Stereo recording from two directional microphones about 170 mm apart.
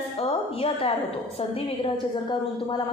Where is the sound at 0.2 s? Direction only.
35° left (ahead or behind).